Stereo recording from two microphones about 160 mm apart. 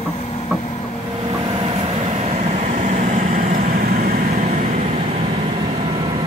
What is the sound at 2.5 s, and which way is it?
Vehicle, 45° right (ahead or behind).